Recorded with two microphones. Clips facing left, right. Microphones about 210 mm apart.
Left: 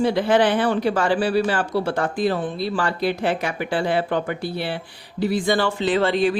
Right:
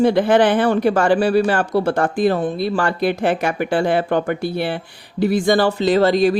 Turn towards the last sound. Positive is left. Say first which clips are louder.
# right 5 dB
turn(degrees=-40)  # may be behind; listen again after turning